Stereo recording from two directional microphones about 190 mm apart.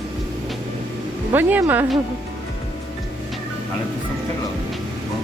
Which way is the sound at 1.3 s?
10° right (ahead or behind).